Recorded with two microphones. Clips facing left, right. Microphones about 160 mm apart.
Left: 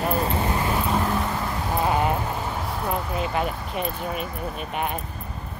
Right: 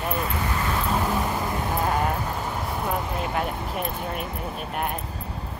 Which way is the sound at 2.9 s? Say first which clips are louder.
Left 3 dB; centre (ahead or behind).